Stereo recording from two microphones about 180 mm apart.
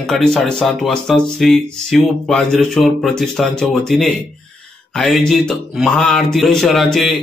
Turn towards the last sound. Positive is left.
turn(degrees=0)  # may be behind; listen again after turning